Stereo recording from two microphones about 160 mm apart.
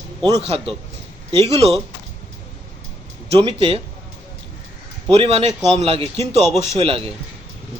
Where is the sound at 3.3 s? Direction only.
35° right (ahead or behind).